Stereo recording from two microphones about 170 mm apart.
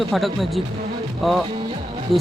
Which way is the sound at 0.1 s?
Centre (ahead or behind).